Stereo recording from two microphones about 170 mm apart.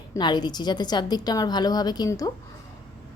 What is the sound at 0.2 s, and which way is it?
A woman's voice, 25° left (ahead or behind).